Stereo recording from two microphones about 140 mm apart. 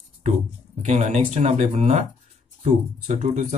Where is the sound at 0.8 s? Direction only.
55° right (ahead or behind).